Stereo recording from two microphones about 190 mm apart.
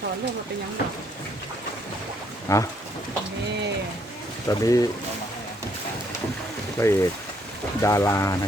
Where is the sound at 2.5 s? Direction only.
15° left (ahead or behind).